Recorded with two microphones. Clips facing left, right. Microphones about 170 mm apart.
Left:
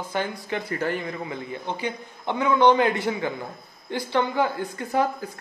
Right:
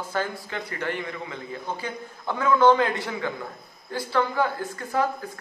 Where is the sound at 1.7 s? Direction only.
15° left (ahead or behind).